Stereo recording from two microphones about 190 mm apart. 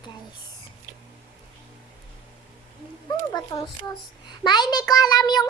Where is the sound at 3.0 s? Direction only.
20° left (ahead or behind).